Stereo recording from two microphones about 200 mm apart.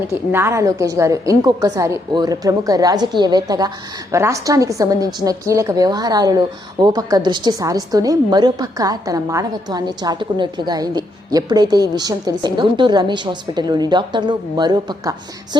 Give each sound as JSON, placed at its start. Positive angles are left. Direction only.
{"t": 0.3, "sound": "a woman's voice", "side_deg": -10}